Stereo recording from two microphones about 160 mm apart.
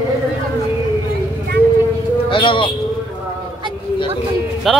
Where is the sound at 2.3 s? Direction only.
35° left (ahead or behind).